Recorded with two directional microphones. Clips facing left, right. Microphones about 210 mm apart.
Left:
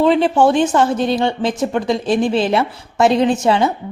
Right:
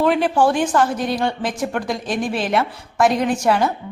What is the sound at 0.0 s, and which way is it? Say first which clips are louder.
Speech: left 4 dB; 25° left (ahead or behind).